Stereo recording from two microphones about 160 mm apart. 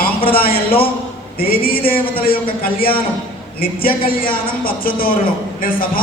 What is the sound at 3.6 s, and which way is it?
A man's voice, 65° left (ahead or behind).